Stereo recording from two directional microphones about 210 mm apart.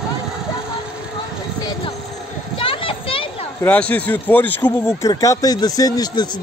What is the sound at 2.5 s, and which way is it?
Children playing, 25° left (ahead or behind).